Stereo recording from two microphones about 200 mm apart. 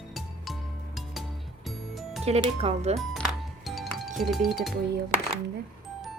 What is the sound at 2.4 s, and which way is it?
Speech, 30° right (ahead or behind).